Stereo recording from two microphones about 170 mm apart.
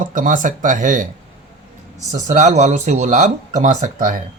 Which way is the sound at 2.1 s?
45° right (ahead or behind).